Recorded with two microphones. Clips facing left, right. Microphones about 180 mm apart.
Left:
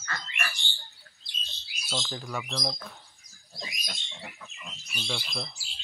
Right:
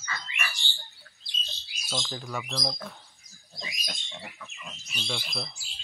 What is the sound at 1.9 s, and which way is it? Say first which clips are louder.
Speech: even; centre (ahead or behind).